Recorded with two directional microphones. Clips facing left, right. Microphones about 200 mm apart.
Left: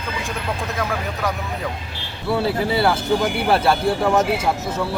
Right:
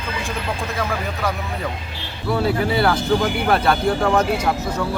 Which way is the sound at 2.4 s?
25° left (ahead or behind).